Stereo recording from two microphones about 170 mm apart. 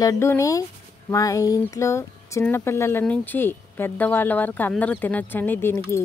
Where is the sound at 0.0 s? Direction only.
20° left (ahead or behind).